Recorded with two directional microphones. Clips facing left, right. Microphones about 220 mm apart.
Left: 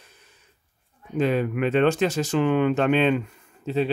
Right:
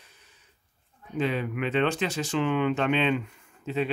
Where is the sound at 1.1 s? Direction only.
45° left (ahead or behind).